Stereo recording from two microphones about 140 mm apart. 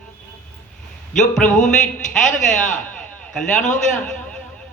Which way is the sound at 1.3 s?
5° left (ahead or behind).